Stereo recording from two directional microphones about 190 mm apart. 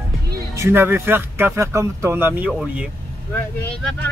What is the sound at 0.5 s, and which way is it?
Speech, 15° right (ahead or behind).